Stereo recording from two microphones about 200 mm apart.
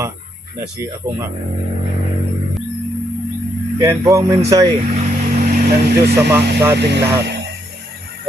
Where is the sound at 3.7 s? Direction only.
15° right (ahead or behind).